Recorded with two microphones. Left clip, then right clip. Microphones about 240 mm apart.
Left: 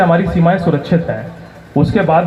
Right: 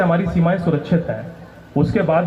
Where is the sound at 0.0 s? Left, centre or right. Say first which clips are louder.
Left 6 dB; left.